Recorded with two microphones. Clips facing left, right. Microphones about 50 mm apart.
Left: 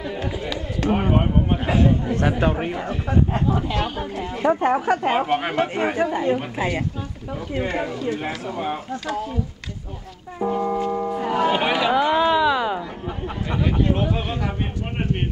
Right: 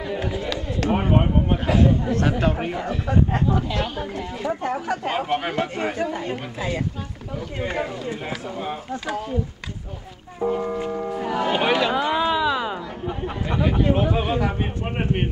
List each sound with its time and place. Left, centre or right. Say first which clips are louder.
0.1 s a sound: right 4 dB; centre
0.9 s speech: even; centre
2.0 s a woman's voice: left 1 dB; centre
2.5 s a woman's voice: even; centre
4.4 s speech: left 8 dB; left
10.4 s foghorn: left 1 dB; centre
10.9 s music: left 2 dB; centre
11.4 s a sound: even; centre
13.2 s speech: right 1 dB; centre